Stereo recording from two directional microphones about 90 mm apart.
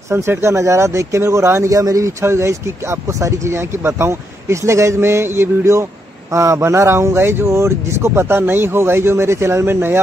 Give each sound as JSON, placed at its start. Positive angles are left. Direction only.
{"t": 0.1, "sound": "speech", "side_deg": -25}